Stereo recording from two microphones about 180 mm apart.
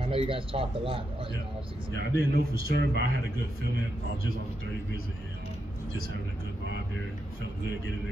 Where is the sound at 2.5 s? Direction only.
60° right (ahead or behind).